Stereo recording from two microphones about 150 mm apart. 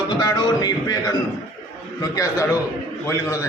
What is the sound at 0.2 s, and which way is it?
Music, 25° left (ahead or behind).